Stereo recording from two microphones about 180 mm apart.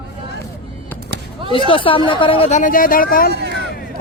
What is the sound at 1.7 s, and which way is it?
Speech, 30° left (ahead or behind).